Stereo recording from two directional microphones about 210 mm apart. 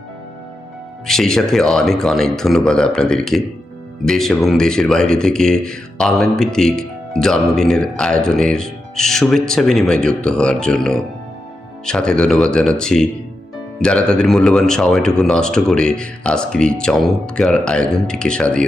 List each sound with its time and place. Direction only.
1.0 s speech: centre (ahead or behind)